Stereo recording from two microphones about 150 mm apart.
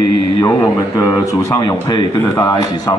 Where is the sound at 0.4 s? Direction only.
20° left (ahead or behind).